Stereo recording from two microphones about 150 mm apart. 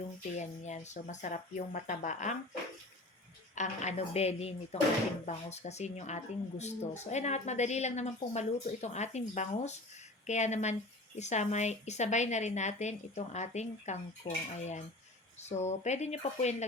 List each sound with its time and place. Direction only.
0.3 s speech: 50° left (ahead or behind)
3.5 s speech: 50° left (ahead or behind)